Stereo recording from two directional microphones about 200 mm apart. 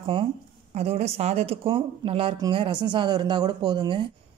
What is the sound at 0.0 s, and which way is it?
Speech, 25° right (ahead or behind).